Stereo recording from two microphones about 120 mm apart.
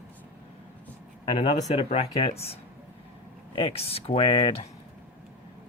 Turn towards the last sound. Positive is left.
turn(degrees=45)  # may be behind; listen again after turning